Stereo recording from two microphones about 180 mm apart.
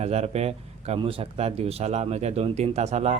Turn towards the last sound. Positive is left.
turn(degrees=-40)  # may be behind; listen again after turning